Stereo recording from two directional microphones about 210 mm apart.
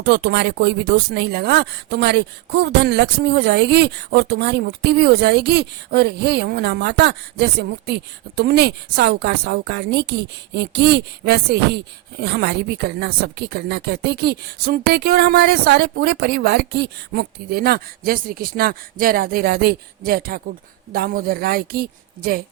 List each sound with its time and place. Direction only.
0.0 s speech: 50° right (ahead or behind)